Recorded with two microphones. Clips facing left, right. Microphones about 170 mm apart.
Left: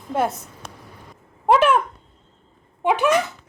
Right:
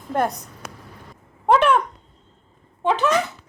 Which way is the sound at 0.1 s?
5° left (ahead or behind).